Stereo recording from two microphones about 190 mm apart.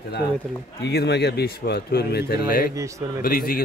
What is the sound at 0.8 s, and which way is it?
A man's voice, 65° left (ahead or behind).